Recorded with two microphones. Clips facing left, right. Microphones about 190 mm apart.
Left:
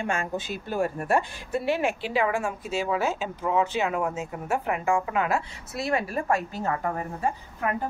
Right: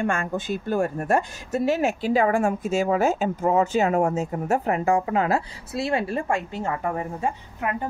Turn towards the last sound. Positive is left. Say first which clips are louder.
# right 1 dB
turn(degrees=-20)  # may be behind; listen again after turning